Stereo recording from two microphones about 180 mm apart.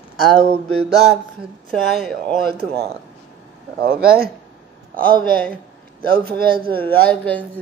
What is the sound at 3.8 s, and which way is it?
Speech, 55° right (ahead or behind).